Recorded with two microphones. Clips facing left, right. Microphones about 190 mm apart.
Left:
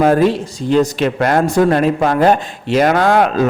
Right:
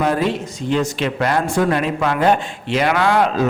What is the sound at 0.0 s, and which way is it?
A man's voice, 45° left (ahead or behind).